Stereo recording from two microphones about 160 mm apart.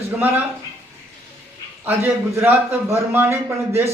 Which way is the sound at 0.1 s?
10° right (ahead or behind).